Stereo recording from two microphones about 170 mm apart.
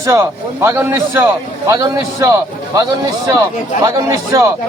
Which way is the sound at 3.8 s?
20° right (ahead or behind).